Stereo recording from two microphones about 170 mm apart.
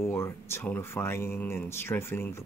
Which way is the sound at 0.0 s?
15° left (ahead or behind).